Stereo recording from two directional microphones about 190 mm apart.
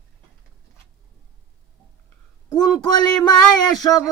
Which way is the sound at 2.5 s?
20° left (ahead or behind).